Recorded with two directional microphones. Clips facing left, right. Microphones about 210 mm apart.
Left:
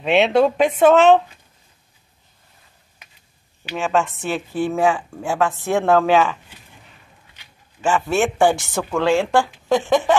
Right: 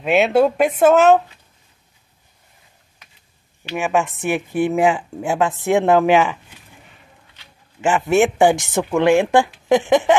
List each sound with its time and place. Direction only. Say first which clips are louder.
0.0 s speech: right 1 dB; 5° right (ahead or behind)
3.7 s a woman's voice: right 1 dB; 10° right (ahead or behind)
7.8 s a woman's voice: right 3 dB; 15° right (ahead or behind)